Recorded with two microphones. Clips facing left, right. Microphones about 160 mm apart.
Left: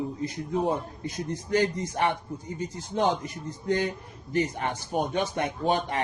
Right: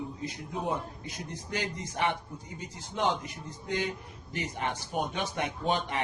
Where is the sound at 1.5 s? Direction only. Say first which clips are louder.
Left 10 dB; 45° left (ahead or behind).